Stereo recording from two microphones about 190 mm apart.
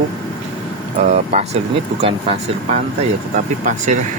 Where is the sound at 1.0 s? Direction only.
35° right (ahead or behind).